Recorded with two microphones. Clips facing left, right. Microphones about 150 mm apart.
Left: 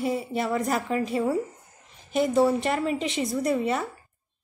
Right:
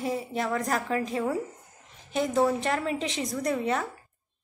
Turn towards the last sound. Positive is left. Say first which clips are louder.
# left 2 dB
turn(degrees=5)  # may be behind; listen again after turning